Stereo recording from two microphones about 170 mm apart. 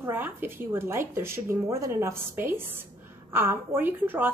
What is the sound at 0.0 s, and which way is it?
A woman's voice, 10° right (ahead or behind).